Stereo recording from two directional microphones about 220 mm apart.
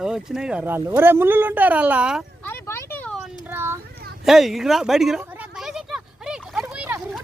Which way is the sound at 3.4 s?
10° right (ahead or behind).